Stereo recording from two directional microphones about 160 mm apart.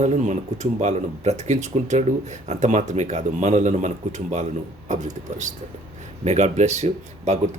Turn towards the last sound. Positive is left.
turn(degrees=-45)  # may be behind; listen again after turning